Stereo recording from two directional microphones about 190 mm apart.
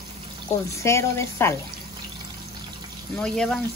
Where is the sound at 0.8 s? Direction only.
15° left (ahead or behind).